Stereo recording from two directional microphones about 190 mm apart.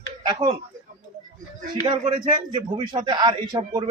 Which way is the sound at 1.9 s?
25° right (ahead or behind).